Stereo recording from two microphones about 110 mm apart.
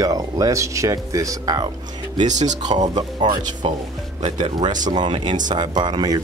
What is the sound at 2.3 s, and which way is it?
Speech, 90° right.